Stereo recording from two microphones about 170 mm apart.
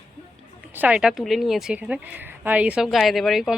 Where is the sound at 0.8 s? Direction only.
5° right (ahead or behind).